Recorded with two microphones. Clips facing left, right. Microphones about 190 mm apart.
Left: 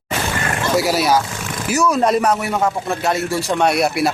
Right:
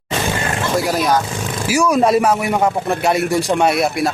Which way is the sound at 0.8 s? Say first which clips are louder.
Left 1 dB; 5° left (ahead or behind).